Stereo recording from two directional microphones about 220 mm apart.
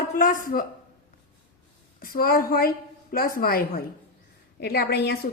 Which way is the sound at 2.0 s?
40° left (ahead or behind).